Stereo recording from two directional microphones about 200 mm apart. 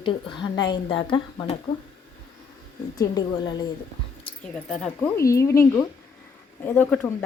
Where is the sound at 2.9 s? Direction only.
20° left (ahead or behind).